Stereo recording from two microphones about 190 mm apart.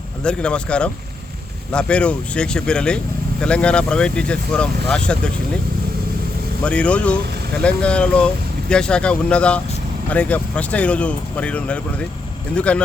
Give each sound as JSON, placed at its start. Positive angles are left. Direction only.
{"t": 0.2, "sound": "speech", "side_deg": 5}
{"t": 6.7, "sound": "speech", "side_deg": 5}